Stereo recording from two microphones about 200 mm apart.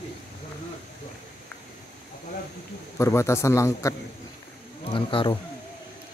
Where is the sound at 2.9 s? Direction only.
15° left (ahead or behind).